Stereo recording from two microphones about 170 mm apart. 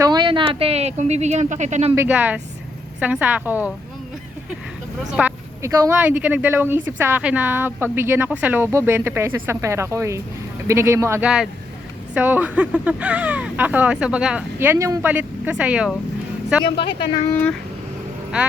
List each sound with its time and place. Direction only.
0.0 s speech: 25° right (ahead or behind); by 2.0 s 40° right (ahead or behind)
2.0 s speech: 10° right (ahead or behind)
5.1 s vehicle: 10° right (ahead or behind)
5.7 s speech: 20° right (ahead or behind)